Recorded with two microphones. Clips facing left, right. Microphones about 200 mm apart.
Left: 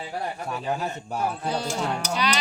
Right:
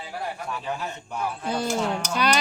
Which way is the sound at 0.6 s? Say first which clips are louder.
Left 6 dB; 40° left (ahead or behind).